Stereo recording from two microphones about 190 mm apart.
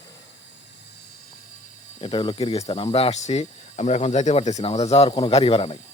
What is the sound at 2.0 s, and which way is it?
A man's voice, 25° left (ahead or behind).